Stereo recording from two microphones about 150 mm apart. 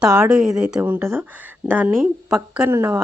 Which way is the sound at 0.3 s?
5° right (ahead or behind).